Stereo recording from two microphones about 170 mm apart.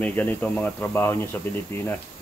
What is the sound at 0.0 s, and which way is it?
Speech, 10° left (ahead or behind).